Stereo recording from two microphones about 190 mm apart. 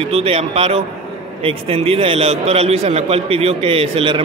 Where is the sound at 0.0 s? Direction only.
30° right (ahead or behind).